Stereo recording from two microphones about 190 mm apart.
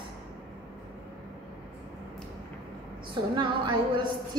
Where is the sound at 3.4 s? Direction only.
25° right (ahead or behind).